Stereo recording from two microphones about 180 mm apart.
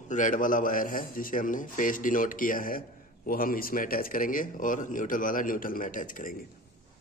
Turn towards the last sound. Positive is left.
turn(degrees=50)  # may be behind; listen again after turning